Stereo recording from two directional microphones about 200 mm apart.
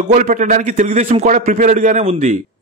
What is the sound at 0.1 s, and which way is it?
A man's voice, 40° right (ahead or behind).